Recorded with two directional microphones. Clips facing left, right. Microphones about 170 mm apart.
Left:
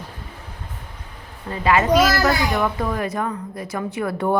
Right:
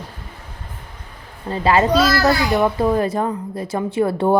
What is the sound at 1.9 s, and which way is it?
Speech, 20° left (ahead or behind).